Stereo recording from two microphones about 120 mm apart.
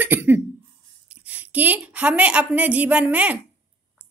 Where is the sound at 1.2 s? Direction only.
15° right (ahead or behind).